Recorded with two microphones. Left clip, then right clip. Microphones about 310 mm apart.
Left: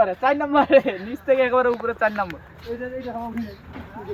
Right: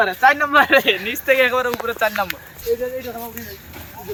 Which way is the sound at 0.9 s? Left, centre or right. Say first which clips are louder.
Right 4 dB; centre.